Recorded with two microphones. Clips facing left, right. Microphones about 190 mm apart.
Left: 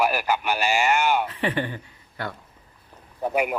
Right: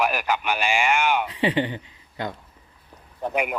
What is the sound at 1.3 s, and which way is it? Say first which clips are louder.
A woman's voice: right 3 dB; 15° right (ahead or behind).